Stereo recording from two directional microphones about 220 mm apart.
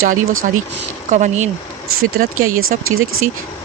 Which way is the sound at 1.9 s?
75° right (ahead or behind).